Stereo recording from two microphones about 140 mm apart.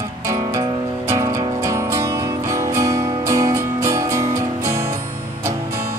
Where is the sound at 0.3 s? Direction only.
20° right (ahead or behind).